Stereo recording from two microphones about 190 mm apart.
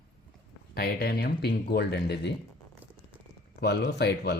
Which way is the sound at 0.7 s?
55° left (ahead or behind).